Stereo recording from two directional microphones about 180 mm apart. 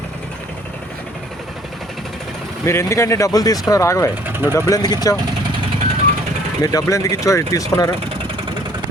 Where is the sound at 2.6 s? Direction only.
15° left (ahead or behind).